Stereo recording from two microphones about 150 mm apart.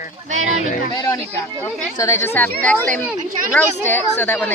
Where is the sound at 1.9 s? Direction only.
20° left (ahead or behind).